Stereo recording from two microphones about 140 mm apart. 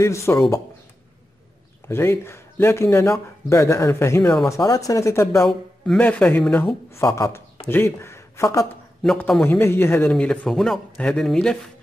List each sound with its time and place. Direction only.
0.0 s speech: 20° left (ahead or behind)
1.9 s speech: 20° left (ahead or behind)
5.5 s speech: 10° left (ahead or behind)
9.0 s speech: centre (ahead or behind)
9.4 s speech: 15° left (ahead or behind)
10.0 s speech: 5° left (ahead or behind)